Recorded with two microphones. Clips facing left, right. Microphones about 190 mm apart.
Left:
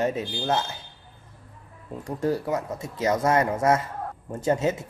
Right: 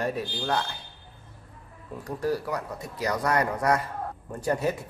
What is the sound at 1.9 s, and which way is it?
Speech, 25° left (ahead or behind).